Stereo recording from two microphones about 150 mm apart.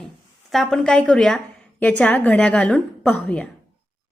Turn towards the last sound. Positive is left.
turn(degrees=10)  # may be behind; listen again after turning